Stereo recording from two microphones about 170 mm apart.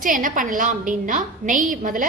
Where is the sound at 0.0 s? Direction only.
50° right (ahead or behind).